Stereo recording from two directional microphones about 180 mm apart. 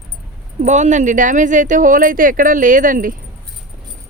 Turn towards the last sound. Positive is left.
turn(degrees=-50)  # may be behind; listen again after turning